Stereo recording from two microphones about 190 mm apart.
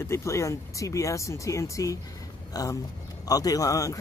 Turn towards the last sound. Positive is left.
turn(degrees=15)  # may be behind; listen again after turning